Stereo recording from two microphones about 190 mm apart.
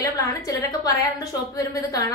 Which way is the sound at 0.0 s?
20° left (ahead or behind).